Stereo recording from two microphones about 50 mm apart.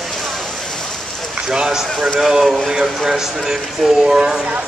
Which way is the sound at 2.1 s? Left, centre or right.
Centre.